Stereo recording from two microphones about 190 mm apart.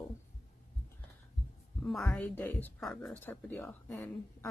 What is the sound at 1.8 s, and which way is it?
A woman's voice, centre (ahead or behind).